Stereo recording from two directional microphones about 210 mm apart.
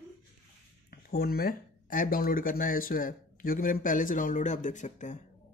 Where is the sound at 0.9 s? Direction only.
45° left (ahead or behind).